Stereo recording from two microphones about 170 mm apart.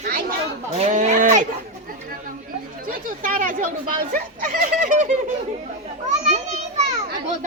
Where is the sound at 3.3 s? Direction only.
55° right (ahead or behind).